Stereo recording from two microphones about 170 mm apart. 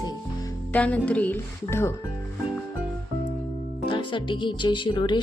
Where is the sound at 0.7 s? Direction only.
10° left (ahead or behind).